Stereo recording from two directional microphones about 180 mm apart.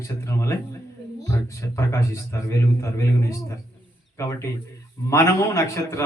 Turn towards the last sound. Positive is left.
turn(degrees=15)  # may be behind; listen again after turning